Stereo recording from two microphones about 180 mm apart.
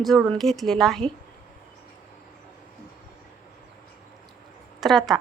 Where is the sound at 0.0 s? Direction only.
Centre (ahead or behind).